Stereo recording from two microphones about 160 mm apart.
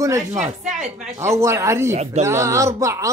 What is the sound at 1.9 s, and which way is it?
Speech, 45° right (ahead or behind).